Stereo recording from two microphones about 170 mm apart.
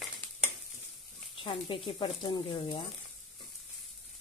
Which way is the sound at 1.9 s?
30° left (ahead or behind).